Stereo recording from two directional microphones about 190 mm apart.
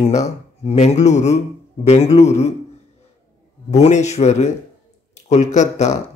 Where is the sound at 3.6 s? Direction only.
35° left (ahead or behind).